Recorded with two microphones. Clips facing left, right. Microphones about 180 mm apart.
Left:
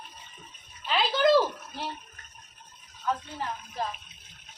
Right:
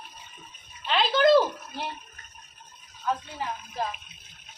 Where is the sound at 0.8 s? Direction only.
5° left (ahead or behind).